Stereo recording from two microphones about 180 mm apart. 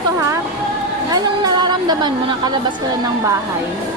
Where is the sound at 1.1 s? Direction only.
20° right (ahead or behind).